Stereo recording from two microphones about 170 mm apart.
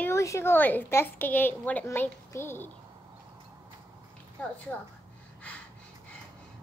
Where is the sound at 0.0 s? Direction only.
15° left (ahead or behind).